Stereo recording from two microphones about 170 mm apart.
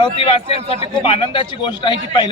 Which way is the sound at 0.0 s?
35° left (ahead or behind).